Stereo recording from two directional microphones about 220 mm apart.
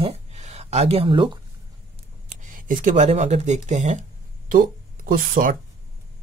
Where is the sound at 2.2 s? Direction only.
35° right (ahead or behind).